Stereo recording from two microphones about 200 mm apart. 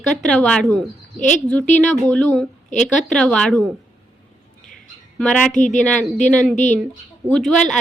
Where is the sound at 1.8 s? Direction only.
5° left (ahead or behind).